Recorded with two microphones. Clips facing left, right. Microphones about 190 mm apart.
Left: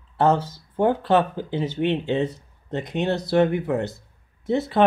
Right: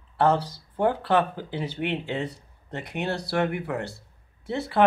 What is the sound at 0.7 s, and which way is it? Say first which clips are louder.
Speech: left 3 dB; 25° left (ahead or behind).